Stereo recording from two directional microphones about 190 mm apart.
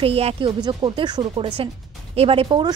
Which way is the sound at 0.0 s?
30° right (ahead or behind).